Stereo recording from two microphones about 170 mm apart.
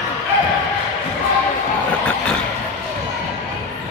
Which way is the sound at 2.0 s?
5° left (ahead or behind).